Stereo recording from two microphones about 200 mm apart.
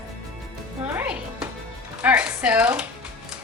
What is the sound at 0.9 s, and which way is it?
Music, 10° right (ahead or behind).